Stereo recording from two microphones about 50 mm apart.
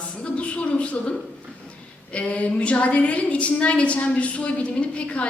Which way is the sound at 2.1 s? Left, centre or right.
Left.